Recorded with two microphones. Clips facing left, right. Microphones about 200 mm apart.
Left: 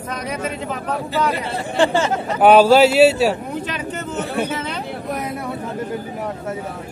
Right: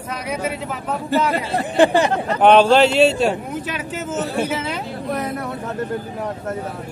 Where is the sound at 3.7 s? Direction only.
5° right (ahead or behind).